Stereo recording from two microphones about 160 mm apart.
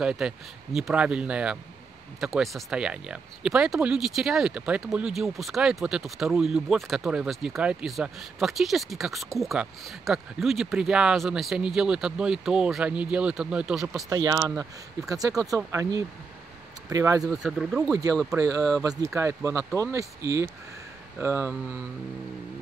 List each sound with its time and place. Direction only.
0.0 s speech: 5° right (ahead or behind)
14.0 s speech: 25° right (ahead or behind)
17.3 s speech: 5° right (ahead or behind)
18.3 s speech: 25° right (ahead or behind)